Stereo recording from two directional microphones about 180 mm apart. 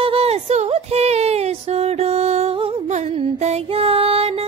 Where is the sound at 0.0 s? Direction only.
30° right (ahead or behind).